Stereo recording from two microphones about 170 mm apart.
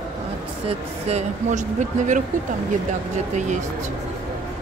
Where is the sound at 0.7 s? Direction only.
40° right (ahead or behind).